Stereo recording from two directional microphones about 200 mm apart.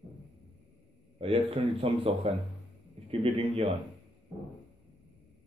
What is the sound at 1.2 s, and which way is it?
Speech, 30° right (ahead or behind).